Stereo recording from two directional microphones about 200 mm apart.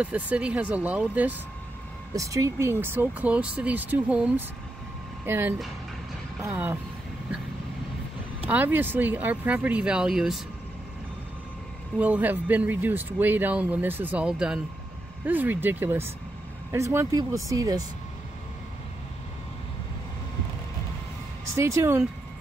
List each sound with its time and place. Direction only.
0.0 s speech: 5° right (ahead or behind)
8.5 s speech: 10° right (ahead or behind)
12.0 s speech: 10° right (ahead or behind)
21.5 s speech: 15° right (ahead or behind)